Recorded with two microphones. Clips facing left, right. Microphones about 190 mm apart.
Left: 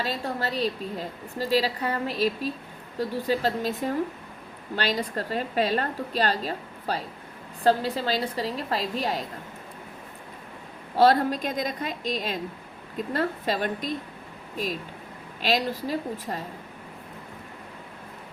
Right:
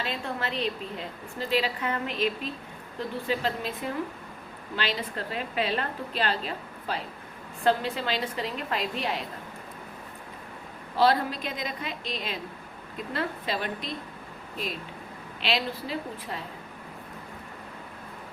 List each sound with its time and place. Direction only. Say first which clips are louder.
0.0 s a woman's voice: left 3 dB; 40° left (ahead or behind)
10.9 s a woman's voice: left 4 dB; 45° left (ahead or behind)